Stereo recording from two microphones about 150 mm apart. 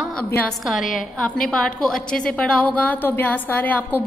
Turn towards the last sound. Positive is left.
turn(degrees=10)  # may be behind; listen again after turning